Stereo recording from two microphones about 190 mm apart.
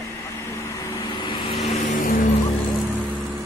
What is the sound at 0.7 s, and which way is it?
Vehicle, 20° left (ahead or behind).